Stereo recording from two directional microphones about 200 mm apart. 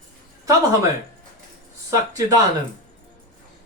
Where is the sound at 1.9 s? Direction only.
15° right (ahead or behind).